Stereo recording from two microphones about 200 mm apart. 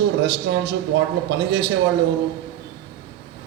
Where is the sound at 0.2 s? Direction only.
60° right (ahead or behind).